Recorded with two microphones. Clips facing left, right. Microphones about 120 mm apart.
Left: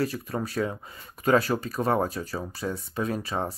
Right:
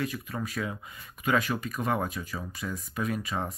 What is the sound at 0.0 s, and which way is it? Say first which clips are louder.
Speech: left 4 dB; 35° left (ahead or behind).